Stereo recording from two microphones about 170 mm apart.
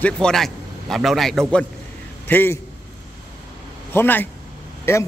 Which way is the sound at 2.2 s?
10° left (ahead or behind).